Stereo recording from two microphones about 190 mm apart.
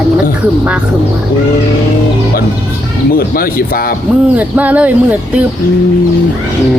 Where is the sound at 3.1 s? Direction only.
50° left (ahead or behind).